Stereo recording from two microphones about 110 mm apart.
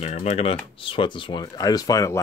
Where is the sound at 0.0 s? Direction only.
85° left; by 0.6 s 65° left (ahead or behind).